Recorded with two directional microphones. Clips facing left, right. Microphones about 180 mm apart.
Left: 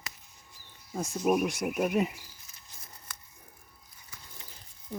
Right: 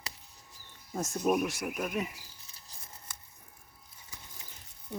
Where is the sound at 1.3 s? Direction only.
20° left (ahead or behind).